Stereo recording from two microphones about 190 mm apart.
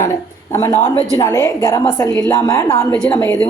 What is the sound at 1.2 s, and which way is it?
A woman's voice, 15° left (ahead or behind).